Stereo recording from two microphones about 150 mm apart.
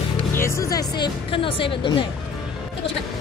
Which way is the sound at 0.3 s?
20° left (ahead or behind).